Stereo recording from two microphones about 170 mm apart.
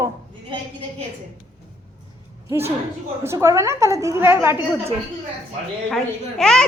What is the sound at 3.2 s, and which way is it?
A woman's voice, 15° right (ahead or behind).